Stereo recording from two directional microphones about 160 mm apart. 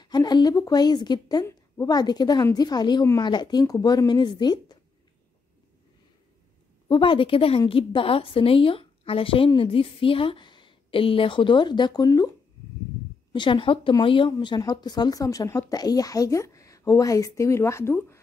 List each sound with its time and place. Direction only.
0.0 s speech: 25° left (ahead or behind)
6.9 s a woman's voice: 30° left (ahead or behind)
13.3 s speech: 30° left (ahead or behind); by 18.2 s 15° left (ahead or behind)